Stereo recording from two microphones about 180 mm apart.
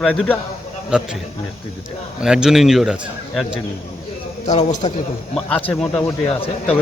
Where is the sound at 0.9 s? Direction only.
5° right (ahead or behind).